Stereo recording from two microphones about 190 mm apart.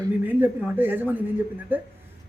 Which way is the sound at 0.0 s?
10° right (ahead or behind).